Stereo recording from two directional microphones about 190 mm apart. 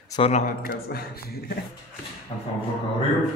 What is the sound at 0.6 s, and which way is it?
Speech, 55° left (ahead or behind).